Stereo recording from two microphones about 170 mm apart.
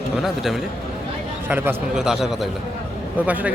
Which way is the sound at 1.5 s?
10° right (ahead or behind).